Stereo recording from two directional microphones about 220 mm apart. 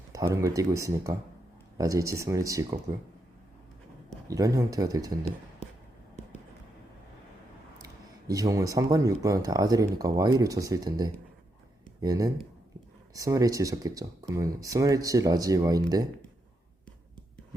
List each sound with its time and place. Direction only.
0.1 s speech: 15° right (ahead or behind)
4.3 s speech: 15° right (ahead or behind)
8.3 s speech: 15° right (ahead or behind)